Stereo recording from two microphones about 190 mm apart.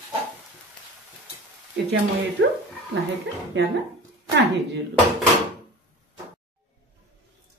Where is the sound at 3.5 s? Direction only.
70° right (ahead or behind).